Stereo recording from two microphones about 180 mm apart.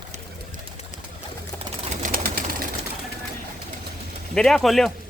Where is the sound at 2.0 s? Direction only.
55° right (ahead or behind).